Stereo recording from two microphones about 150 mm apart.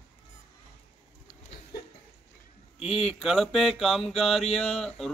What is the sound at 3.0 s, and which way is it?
A man's voice, centre (ahead or behind).